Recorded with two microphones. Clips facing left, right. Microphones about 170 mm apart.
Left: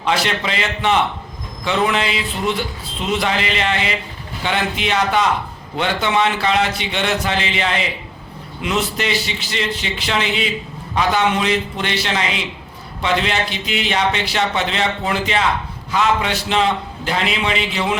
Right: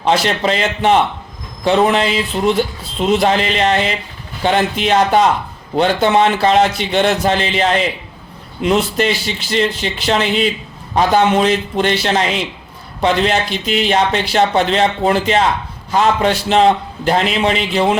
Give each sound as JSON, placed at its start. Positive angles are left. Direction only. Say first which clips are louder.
{"t": 0.1, "sound": "speech", "louder": "right 5 dB", "side_deg": -40}